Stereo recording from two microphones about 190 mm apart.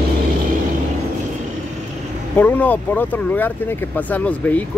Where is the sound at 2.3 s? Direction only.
10° left (ahead or behind).